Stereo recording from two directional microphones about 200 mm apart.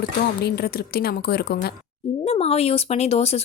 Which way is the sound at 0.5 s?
50° left (ahead or behind).